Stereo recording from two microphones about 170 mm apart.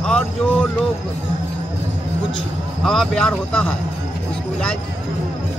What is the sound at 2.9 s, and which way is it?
Speech, 5° left (ahead or behind).